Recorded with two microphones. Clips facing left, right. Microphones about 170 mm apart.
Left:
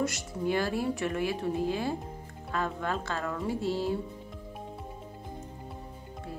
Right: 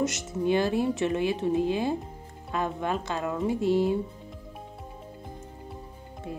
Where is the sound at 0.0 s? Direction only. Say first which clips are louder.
Right 3 dB; 20° right (ahead or behind).